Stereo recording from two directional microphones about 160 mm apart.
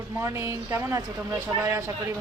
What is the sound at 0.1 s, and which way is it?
A woman's voice, 20° right (ahead or behind).